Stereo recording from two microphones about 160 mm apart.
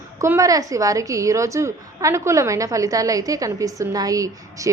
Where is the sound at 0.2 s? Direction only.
20° right (ahead or behind).